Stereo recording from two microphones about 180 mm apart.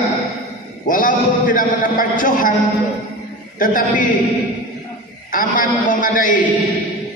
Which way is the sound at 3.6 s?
50° left (ahead or behind).